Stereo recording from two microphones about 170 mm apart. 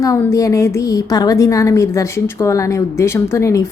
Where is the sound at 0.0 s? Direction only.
20° left (ahead or behind).